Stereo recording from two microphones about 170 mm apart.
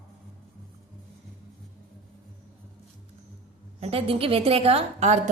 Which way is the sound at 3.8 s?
35° right (ahead or behind).